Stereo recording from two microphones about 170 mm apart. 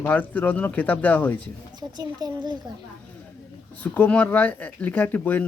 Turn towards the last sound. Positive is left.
turn(degrees=10)  # may be behind; listen again after turning